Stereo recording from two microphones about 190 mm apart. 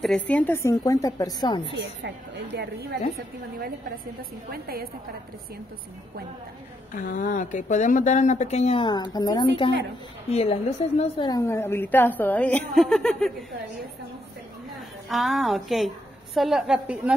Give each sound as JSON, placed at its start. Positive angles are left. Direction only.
{"t": 0.0, "sound": "a woman's voice", "side_deg": 5}
{"t": 1.7, "sound": "a woman's voice", "side_deg": -65}
{"t": 7.2, "sound": "speech", "side_deg": 45}
{"t": 10.3, "sound": "a woman's voice", "side_deg": 35}
{"t": 15.0, "sound": "a woman's voice", "side_deg": 0}